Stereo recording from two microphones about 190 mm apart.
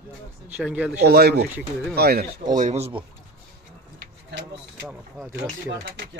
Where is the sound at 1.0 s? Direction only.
60° right (ahead or behind).